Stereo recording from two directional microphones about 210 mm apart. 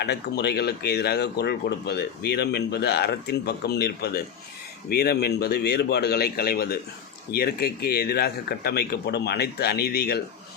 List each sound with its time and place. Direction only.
0.0 s speech: 50° left (ahead or behind)